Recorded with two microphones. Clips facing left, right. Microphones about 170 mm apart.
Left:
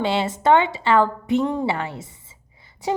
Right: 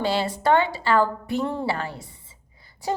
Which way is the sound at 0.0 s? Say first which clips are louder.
Left 2 dB; 25° left (ahead or behind).